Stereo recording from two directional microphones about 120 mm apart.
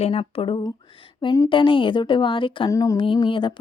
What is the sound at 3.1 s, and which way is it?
Speech, 40° left (ahead or behind).